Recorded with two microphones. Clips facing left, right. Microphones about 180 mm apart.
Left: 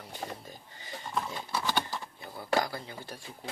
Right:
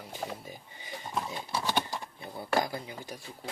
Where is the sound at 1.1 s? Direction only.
10° right (ahead or behind).